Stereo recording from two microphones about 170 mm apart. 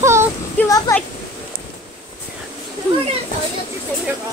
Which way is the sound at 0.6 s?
15° left (ahead or behind).